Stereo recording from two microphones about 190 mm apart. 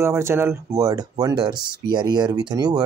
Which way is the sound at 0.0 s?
15° right (ahead or behind).